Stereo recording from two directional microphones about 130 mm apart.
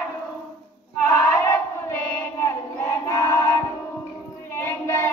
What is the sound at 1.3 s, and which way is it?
Crowd, 20° left (ahead or behind).